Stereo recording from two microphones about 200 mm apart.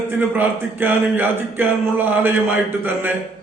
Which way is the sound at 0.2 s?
10° right (ahead or behind).